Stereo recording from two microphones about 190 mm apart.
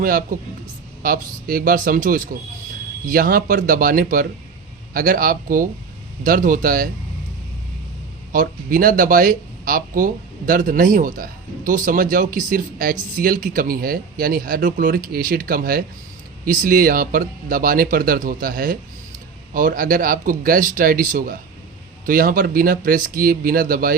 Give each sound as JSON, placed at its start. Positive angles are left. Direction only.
{"t": 0.0, "sound": "a man's voice", "side_deg": -50}
{"t": 8.3, "sound": "a man's voice", "side_deg": -45}